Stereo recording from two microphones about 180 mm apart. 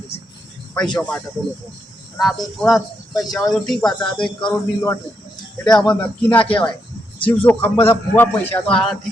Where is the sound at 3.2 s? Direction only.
20° left (ahead or behind).